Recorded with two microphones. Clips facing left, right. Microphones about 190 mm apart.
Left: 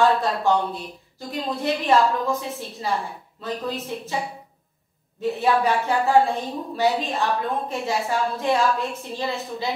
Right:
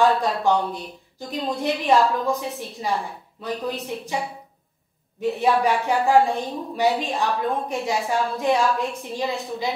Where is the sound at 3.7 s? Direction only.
Centre (ahead or behind).